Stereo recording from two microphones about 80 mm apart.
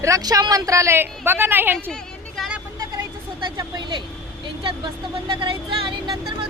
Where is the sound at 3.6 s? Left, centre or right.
Right.